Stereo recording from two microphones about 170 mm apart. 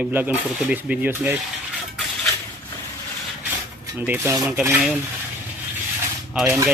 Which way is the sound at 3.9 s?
10° right (ahead or behind).